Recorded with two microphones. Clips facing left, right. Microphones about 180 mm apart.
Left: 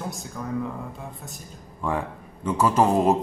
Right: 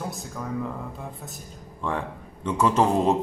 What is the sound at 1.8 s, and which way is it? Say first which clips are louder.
Speech: left 2 dB; 5° left (ahead or behind).